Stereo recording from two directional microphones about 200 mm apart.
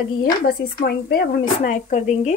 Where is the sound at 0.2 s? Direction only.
50° left (ahead or behind).